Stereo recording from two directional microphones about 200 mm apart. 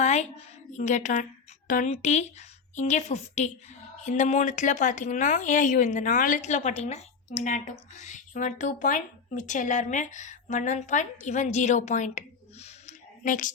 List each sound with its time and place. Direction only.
0.0 s a woman's voice: 35° left (ahead or behind)